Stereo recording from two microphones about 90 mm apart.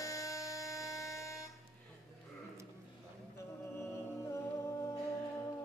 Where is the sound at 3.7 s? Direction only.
30° left (ahead or behind).